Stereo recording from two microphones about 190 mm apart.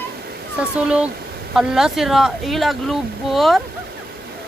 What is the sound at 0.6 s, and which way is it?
Speech, 5° right (ahead or behind).